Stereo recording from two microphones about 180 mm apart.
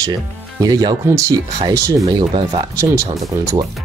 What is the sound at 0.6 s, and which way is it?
Speech, 20° right (ahead or behind).